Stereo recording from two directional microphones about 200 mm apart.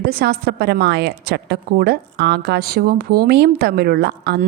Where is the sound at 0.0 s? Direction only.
50° right (ahead or behind).